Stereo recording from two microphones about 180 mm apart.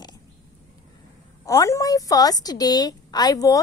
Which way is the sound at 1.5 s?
15° left (ahead or behind).